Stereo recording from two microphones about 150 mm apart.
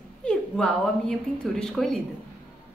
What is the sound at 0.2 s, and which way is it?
A woman's voice, 5° left (ahead or behind).